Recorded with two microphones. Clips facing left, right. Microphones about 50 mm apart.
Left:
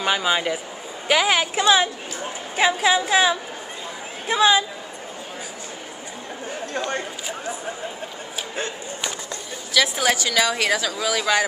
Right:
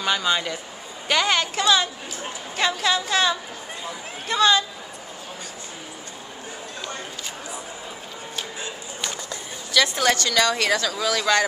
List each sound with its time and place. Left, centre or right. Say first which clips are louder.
0.0 s speech: left 2 dB; centre
9.8 s speech: even; centre